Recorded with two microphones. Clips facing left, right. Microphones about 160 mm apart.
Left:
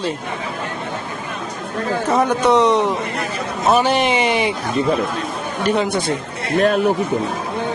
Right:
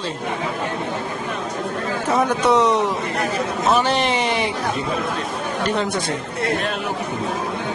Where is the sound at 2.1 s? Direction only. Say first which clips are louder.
Left 2 dB; centre (ahead or behind).